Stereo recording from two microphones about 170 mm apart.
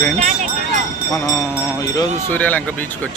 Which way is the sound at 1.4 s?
20° left (ahead or behind).